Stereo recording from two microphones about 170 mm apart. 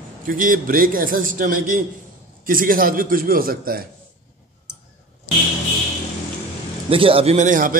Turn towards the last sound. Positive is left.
turn(degrees=-50)  # may be behind; listen again after turning